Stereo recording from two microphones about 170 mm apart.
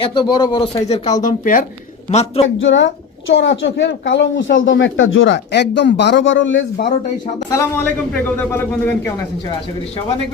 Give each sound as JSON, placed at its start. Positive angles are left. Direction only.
{"t": 0.0, "sound": "a man's voice", "side_deg": 25}
{"t": 1.2, "sound": "speech", "side_deg": 50}
{"t": 2.0, "sound": "a man's voice", "side_deg": 40}
{"t": 2.6, "sound": "a woman's voice", "side_deg": 90}
{"t": 7.5, "sound": "a man's voice", "side_deg": 10}